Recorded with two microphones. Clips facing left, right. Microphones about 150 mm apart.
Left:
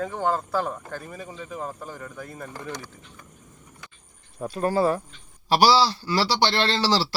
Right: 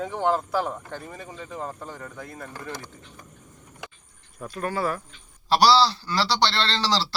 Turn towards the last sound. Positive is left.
turn(degrees=10)  # may be behind; listen again after turning